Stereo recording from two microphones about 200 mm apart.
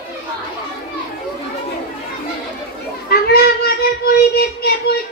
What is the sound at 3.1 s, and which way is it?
A child's voice, 50° left (ahead or behind).